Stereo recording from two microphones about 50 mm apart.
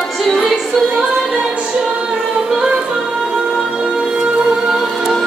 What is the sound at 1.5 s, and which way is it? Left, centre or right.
Music, right.